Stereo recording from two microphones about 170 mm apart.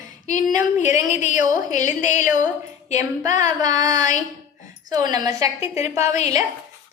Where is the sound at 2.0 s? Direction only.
50° left (ahead or behind).